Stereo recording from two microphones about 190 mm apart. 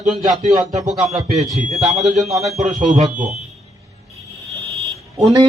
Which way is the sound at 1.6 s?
40° right (ahead or behind).